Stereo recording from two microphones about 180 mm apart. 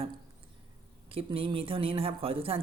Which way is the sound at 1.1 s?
30° right (ahead or behind).